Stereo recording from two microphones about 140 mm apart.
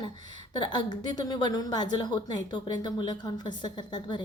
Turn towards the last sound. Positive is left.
turn(degrees=35)  # may be behind; listen again after turning